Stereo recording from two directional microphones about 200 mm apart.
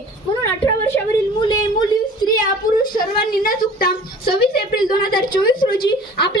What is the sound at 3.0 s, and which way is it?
A woman's voice, 45° left (ahead or behind).